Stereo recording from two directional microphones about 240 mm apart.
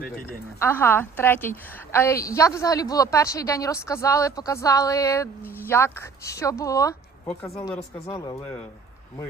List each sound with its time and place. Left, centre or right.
0.6 s a woman's voice: centre
8.1 s a woman's voice: centre